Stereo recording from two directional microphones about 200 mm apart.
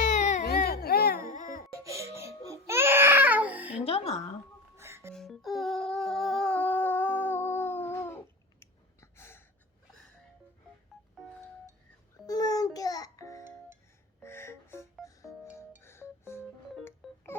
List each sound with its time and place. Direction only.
0.1 s baby cry: 35° left (ahead or behind)
0.4 s a sound: 50° left (ahead or behind)
1.8 s crying: 15° right (ahead or behind)
3.8 s music: 30° left (ahead or behind)
4.8 s music: 15° right (ahead or behind)
5.1 s music: centre (ahead or behind)
12.2 s music: 20° left (ahead or behind)
14.2 s gasp: 10° left (ahead or behind)
15.5 s music: 10° left (ahead or behind)
17.0 s music: centre (ahead or behind)